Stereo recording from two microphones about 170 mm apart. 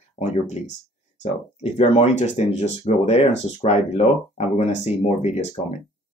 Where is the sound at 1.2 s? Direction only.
40° left (ahead or behind).